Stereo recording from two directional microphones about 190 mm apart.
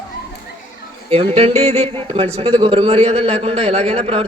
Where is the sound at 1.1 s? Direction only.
30° right (ahead or behind).